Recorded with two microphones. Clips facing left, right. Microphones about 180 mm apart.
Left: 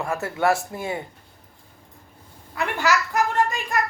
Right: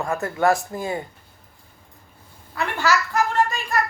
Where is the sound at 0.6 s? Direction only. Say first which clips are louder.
Right 2 dB; 25° left (ahead or behind).